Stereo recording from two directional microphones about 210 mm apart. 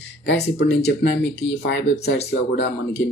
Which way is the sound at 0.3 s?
55° left (ahead or behind).